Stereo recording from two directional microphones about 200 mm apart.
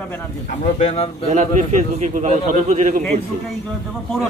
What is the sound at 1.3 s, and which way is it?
A man's voice, 40° right (ahead or behind).